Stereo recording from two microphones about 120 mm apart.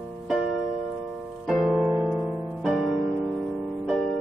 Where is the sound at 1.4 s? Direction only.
5° right (ahead or behind).